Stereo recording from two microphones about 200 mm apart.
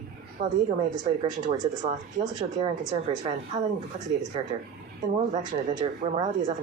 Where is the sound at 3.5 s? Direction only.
20° right (ahead or behind).